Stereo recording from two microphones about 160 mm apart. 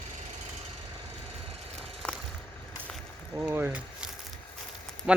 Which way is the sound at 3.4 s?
10° right (ahead or behind).